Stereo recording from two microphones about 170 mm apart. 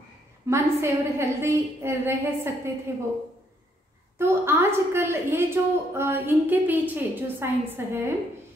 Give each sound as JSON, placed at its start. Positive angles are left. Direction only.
{"t": 0.5, "sound": "a woman's voice", "side_deg": -15}
{"t": 4.2, "sound": "a woman's voice", "side_deg": -15}